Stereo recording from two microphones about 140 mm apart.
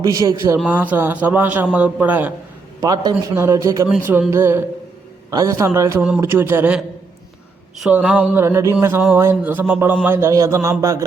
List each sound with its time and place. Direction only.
0.0 s a man's voice: 25° right (ahead or behind)
2.8 s a man's voice: 30° right (ahead or behind)